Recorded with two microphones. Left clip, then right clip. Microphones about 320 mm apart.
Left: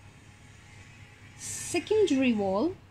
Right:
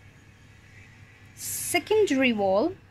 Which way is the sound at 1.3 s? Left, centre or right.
Right.